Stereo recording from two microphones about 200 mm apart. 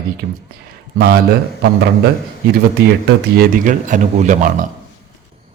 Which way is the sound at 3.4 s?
40° right (ahead or behind).